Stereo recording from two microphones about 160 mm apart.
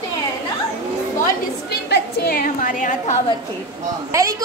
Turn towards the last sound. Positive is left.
turn(degrees=-20)  # may be behind; listen again after turning